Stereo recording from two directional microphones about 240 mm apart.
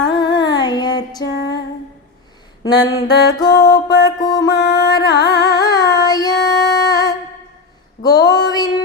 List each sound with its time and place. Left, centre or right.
0.0 s female singing: centre
1.2 s music: left
2.6 s music: centre
8.0 s female singing: centre